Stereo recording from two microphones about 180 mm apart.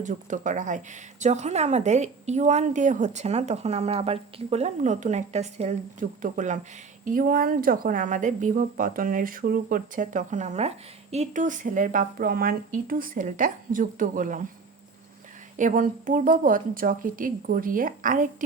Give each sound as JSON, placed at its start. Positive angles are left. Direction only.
{"t": 0.0, "sound": "a woman's voice", "side_deg": -45}
{"t": 15.5, "sound": "a woman's voice", "side_deg": -45}